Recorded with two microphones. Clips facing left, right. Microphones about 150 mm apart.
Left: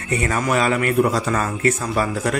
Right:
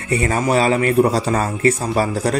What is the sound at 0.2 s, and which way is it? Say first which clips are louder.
Speech: right 3 dB; 30° right (ahead or behind).